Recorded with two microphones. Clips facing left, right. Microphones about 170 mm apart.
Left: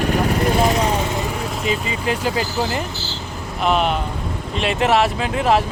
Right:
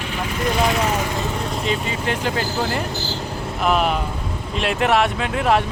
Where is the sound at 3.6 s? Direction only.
5° right (ahead or behind).